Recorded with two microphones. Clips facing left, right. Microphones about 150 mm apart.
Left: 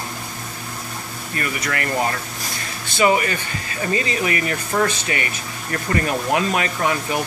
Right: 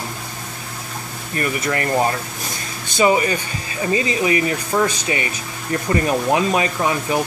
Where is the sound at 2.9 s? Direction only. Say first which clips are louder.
Right 2 dB; 20° right (ahead or behind).